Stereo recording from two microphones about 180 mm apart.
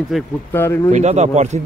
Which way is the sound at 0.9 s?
40° right (ahead or behind).